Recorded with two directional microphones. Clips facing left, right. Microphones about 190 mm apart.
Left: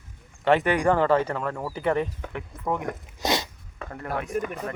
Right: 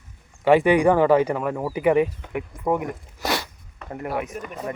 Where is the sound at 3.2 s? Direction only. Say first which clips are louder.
Even; 20° left (ahead or behind).